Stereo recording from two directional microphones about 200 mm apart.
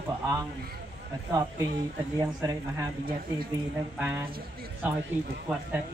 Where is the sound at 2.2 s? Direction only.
15° right (ahead or behind).